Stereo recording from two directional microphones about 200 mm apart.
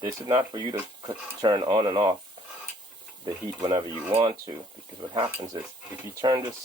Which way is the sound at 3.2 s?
20° right (ahead or behind).